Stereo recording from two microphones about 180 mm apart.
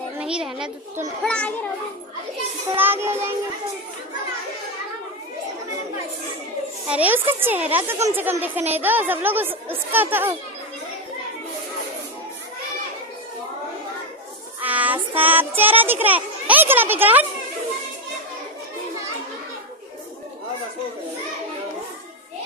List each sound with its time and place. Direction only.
0.2 s a child's voice: 5° right (ahead or behind)
2.7 s speech: 10° right (ahead or behind)
6.9 s speech: 10° right (ahead or behind)
14.6 s speech: 10° right (ahead or behind)